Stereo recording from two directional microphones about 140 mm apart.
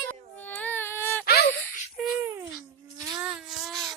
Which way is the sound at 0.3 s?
10° left (ahead or behind).